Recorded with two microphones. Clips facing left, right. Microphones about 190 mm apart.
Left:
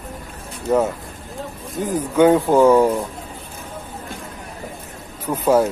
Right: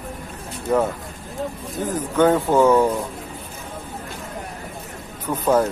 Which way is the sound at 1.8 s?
10° left (ahead or behind).